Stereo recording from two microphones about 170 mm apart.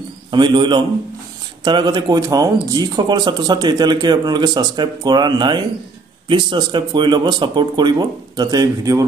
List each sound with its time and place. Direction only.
0.3 s speech: 25° right (ahead or behind)